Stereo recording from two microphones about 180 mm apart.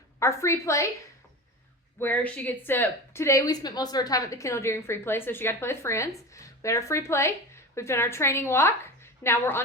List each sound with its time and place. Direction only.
0.2 s speech: 15° left (ahead or behind)
2.0 s speech: 10° left (ahead or behind)